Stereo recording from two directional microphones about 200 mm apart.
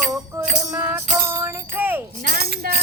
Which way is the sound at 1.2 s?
10° right (ahead or behind).